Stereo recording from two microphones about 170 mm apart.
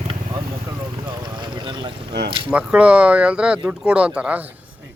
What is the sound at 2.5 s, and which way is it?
Speech, 5° right (ahead or behind).